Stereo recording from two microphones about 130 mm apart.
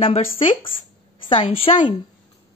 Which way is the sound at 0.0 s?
45° left (ahead or behind).